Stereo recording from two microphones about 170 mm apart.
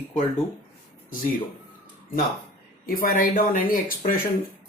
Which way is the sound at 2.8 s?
60° left (ahead or behind).